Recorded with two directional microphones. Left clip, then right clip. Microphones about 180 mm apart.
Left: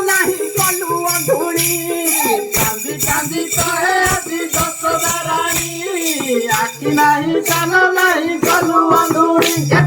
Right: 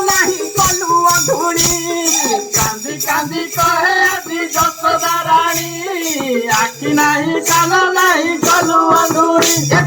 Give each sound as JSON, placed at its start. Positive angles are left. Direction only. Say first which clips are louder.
{"t": 3.8, "sound": "music", "louder": "right 2 dB", "side_deg": -20}
{"t": 6.5, "sound": "music", "louder": "right 2 dB", "side_deg": -20}